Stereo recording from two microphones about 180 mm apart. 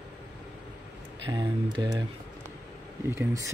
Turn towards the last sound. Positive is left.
turn(degrees=-15)  # may be behind; listen again after turning